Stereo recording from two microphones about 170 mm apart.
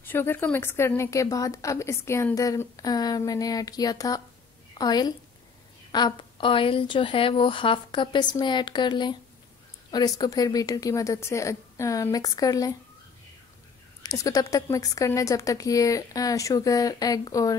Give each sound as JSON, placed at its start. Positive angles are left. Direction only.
{"t": 0.0, "sound": "a woman's voice", "side_deg": 10}
{"t": 14.0, "sound": "a woman's voice", "side_deg": 20}